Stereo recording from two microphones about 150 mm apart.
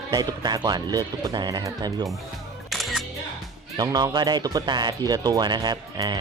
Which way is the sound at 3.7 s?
25° right (ahead or behind).